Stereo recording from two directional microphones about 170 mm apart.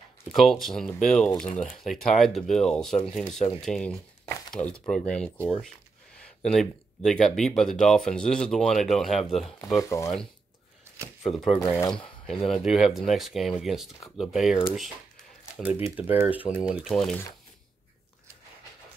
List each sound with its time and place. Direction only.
0.4 s speech: centre (ahead or behind)
9.8 s speech: 20° left (ahead or behind)
11.2 s speech: centre (ahead or behind)
11.6 s speech: 20° left (ahead or behind)
12.3 s speech: centre (ahead or behind)